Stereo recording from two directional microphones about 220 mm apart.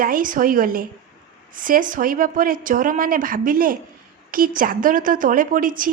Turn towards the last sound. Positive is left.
turn(degrees=-40)  # may be behind; listen again after turning